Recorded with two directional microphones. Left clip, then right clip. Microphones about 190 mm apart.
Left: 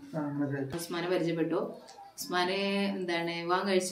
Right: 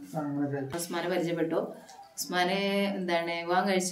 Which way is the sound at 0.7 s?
25° right (ahead or behind).